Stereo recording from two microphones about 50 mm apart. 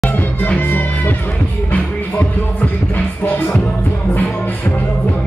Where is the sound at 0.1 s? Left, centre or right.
Left.